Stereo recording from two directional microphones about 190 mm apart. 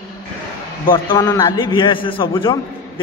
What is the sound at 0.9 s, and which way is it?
A man's voice, 25° left (ahead or behind).